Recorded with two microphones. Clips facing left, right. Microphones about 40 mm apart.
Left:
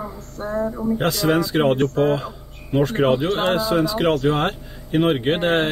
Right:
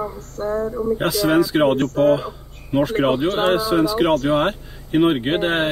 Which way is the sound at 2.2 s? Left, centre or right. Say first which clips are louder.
Right 2 dB; centre.